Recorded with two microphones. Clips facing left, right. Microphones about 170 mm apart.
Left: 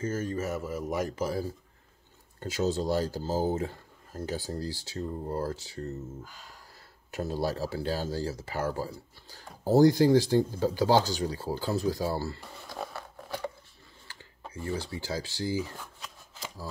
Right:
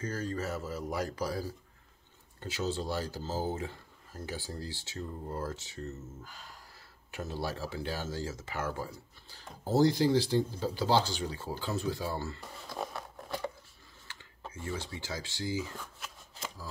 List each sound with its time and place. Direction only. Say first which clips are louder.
0.0 s speech: left 4 dB; 20° left (ahead or behind)
2.4 s speech: left 6 dB; 40° left (ahead or behind)
7.1 s speech: left 6 dB; 40° left (ahead or behind)
14.0 s speech: even; 35° left (ahead or behind)